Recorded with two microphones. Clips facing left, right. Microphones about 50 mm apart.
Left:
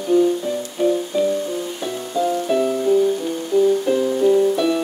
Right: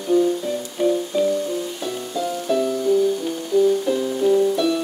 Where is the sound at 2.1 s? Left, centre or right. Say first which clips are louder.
Left 4 dB; centre.